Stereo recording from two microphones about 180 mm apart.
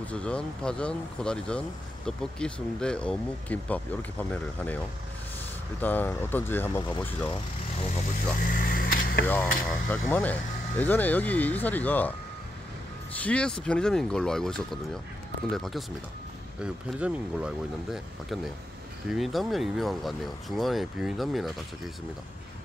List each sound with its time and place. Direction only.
0.0 s speech: 5° left (ahead or behind)
5.8 s speech: 10° left (ahead or behind)
8.4 s speech: 50° left (ahead or behind)
9.3 s speech: 10° left (ahead or behind)
13.2 s speech: 5° left (ahead or behind)